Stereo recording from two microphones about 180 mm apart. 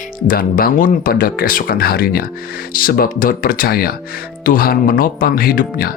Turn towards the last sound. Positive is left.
turn(degrees=55)  # may be behind; listen again after turning